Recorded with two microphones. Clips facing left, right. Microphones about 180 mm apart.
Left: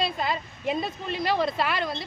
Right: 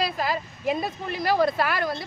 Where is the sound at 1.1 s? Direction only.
25° left (ahead or behind).